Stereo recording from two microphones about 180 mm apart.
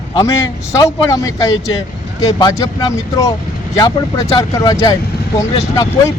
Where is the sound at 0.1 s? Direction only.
15° left (ahead or behind).